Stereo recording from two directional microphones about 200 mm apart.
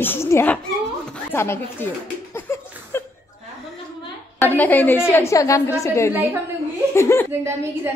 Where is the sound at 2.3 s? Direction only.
10° left (ahead or behind).